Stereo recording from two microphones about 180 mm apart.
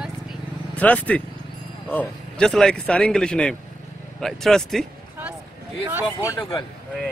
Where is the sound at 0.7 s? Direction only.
10° left (ahead or behind).